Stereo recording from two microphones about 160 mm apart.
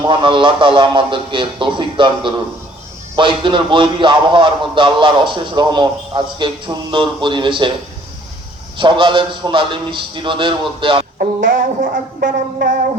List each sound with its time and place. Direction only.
0.0 s a man's voice: 30° right (ahead or behind)
8.8 s a man's voice: 30° right (ahead or behind)
11.2 s speech: 60° right (ahead or behind)